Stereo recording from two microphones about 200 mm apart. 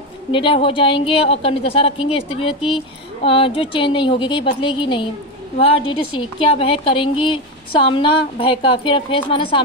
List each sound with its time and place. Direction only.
0.3 s a woman's voice: 25° left (ahead or behind)